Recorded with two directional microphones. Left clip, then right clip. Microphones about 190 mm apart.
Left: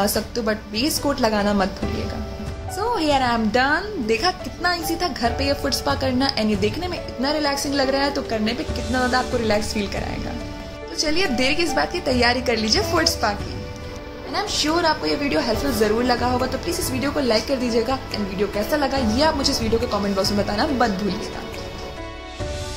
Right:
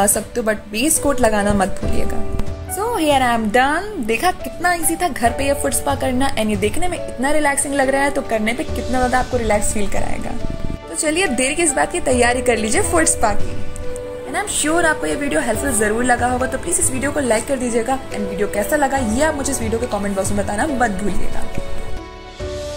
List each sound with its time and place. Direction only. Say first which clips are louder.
0.0 s a woman's voice: right 4 dB; 20° right (ahead or behind)
2.8 s a woman's voice: right 4 dB; 20° right (ahead or behind)
11.0 s a woman's voice: right 3 dB; 20° right (ahead or behind)
14.7 s a woman's voice: right 5 dB; 10° right (ahead or behind)